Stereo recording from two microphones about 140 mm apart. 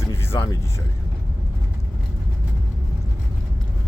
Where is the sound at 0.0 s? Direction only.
15° left (ahead or behind).